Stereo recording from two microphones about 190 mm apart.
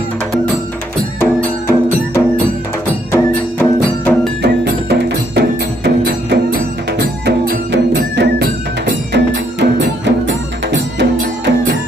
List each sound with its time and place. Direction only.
1.2 s music: 15° left (ahead or behind)
4.4 s music: 60° right (ahead or behind)